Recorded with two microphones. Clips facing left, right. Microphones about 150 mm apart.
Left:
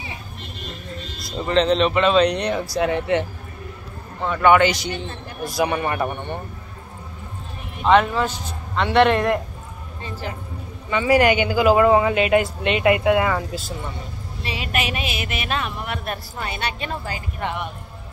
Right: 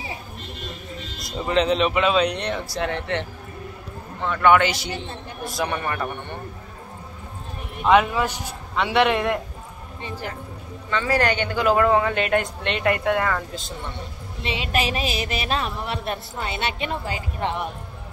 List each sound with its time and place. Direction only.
1.2 s a man's voice: 10° right (ahead or behind)
5.7 s a man's voice: 20° left (ahead or behind)
7.8 s speech: 10° right (ahead or behind)
10.9 s speech: 10° left (ahead or behind)
14.4 s speech: 25° right (ahead or behind)